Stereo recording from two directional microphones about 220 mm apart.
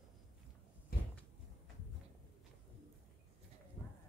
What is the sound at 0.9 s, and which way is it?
Cupboard open or close, 45° left (ahead or behind).